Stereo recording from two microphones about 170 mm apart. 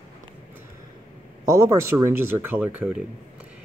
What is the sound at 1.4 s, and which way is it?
Speech, 20° right (ahead or behind).